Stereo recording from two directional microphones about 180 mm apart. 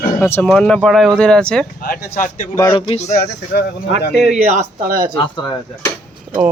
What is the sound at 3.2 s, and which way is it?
Speech, 60° left (ahead or behind).